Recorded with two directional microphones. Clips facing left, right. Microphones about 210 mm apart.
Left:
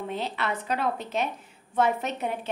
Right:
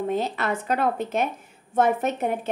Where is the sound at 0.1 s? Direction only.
45° right (ahead or behind).